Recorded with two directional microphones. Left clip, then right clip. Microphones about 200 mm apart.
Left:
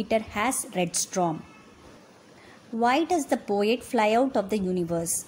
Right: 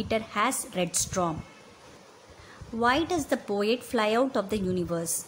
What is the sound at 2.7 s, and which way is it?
A woman's voice, 5° left (ahead or behind).